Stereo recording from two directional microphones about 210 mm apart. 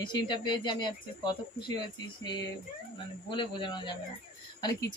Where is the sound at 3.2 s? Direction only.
25° left (ahead or behind).